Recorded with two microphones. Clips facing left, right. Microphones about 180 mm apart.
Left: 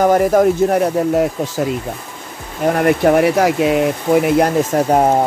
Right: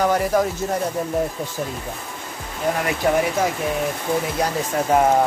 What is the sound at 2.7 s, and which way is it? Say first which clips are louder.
Speech: left 8 dB; 55° left (ahead or behind).